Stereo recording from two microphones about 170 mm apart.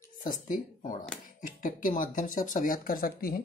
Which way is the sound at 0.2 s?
50° left (ahead or behind).